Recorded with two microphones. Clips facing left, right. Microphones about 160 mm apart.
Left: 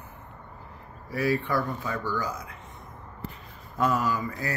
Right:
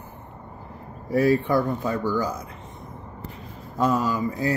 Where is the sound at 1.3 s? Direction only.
25° right (ahead or behind).